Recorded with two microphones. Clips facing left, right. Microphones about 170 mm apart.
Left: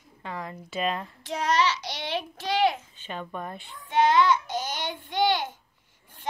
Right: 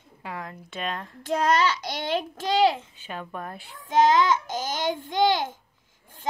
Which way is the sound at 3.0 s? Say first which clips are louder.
Left 1 dB; 5° right (ahead or behind).